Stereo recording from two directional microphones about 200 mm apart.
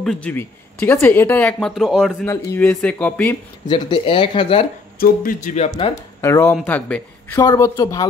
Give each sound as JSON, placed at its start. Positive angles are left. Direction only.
{"t": 0.0, "sound": "speech", "side_deg": 5}
{"t": 2.2, "sound": "speech", "side_deg": 10}
{"t": 3.6, "sound": "speech", "side_deg": 25}
{"t": 4.9, "sound": "speech", "side_deg": 45}
{"t": 5.9, "sound": "speech", "side_deg": 15}